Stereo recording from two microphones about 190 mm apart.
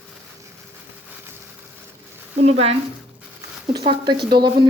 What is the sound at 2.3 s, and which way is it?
A woman's voice, 35° right (ahead or behind).